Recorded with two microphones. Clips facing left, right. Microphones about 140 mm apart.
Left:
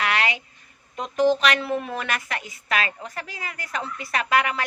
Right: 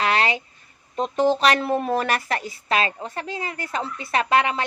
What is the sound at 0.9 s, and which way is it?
A woman's voice, 30° right (ahead or behind).